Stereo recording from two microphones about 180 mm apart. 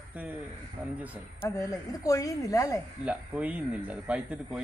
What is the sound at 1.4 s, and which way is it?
A woman's voice, 20° left (ahead or behind).